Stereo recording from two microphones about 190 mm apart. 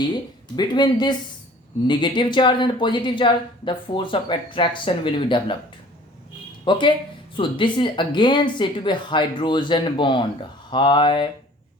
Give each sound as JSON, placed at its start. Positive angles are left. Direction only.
{"t": 0.5, "sound": "speech", "side_deg": 20}
{"t": 6.7, "sound": "speech", "side_deg": 25}